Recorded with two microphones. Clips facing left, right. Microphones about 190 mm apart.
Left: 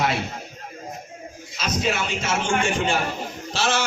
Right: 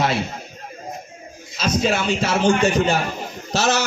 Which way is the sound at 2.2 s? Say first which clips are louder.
Right 6 dB; 35° right (ahead or behind).